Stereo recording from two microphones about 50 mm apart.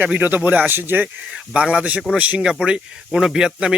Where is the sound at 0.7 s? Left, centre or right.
Right.